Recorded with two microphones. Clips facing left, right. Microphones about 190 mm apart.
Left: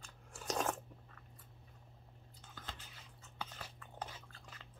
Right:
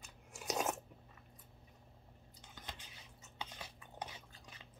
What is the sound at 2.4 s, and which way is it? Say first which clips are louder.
Chewing: left 1 dB; 15° right (ahead or behind).